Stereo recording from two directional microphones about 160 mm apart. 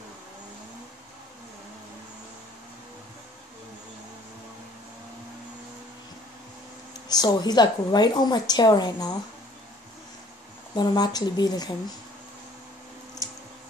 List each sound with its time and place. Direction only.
7.1 s a woman's voice: 25° left (ahead or behind)
10.8 s a woman's voice: 25° left (ahead or behind)